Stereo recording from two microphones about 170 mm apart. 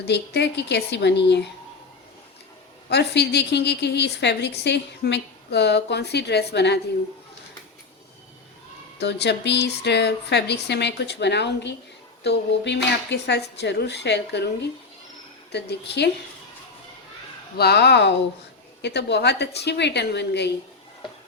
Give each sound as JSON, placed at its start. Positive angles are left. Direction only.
{"t": 0.0, "sound": "a woman's voice", "side_deg": 85}
{"t": 2.9, "sound": "a woman's voice", "side_deg": 75}
{"t": 9.0, "sound": "a woman's voice", "side_deg": 80}
{"t": 15.5, "sound": "speech", "side_deg": 80}
{"t": 17.6, "sound": "a woman's voice", "side_deg": 75}